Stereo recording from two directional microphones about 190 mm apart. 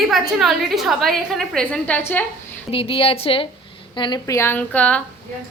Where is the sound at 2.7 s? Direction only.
30° left (ahead or behind); by 5.0 s 5° left (ahead or behind).